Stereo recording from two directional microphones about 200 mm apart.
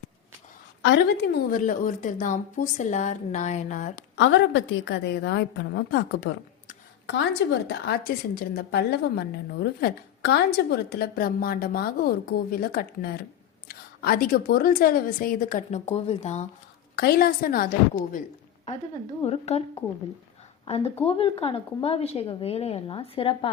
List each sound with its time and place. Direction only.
0.8 s a woman's voice: 60° left (ahead or behind); by 3.9 s 40° left (ahead or behind)
3.9 s a woman's voice: 65° left (ahead or behind); by 16.5 s 35° left (ahead or behind)
16.9 s a woman's voice: 50° left (ahead or behind)
19.2 s a woman's voice: 30° left (ahead or behind)
20.7 s a woman's voice: 30° left (ahead or behind)